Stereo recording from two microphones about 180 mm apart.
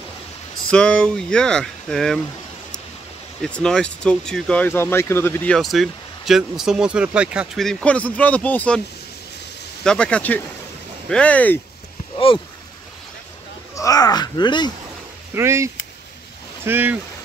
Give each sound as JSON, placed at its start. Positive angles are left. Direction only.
{"t": 0.7, "sound": "speech", "side_deg": 5}
{"t": 3.4, "sound": "speech", "side_deg": 5}
{"t": 9.8, "sound": "speech", "side_deg": 5}
{"t": 13.7, "sound": "speech", "side_deg": 20}
{"t": 15.3, "sound": "speech", "side_deg": -15}